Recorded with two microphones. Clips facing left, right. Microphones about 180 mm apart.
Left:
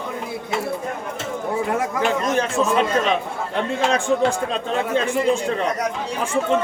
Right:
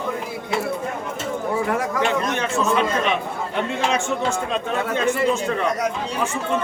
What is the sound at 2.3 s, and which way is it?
Speech, 35° left (ahead or behind).